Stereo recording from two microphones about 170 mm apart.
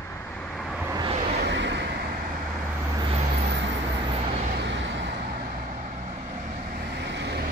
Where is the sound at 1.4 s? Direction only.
90° right.